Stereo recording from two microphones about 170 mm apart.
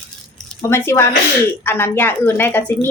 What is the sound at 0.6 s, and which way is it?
Speech, 15° left (ahead or behind).